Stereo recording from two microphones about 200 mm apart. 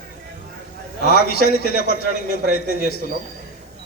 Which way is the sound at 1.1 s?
50° left (ahead or behind).